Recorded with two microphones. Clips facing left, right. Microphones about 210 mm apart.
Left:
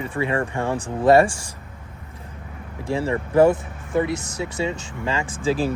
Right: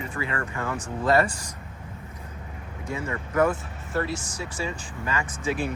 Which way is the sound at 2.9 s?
30° left (ahead or behind).